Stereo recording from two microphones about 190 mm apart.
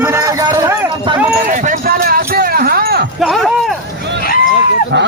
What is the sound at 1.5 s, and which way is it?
Clip-clop, 45° right (ahead or behind).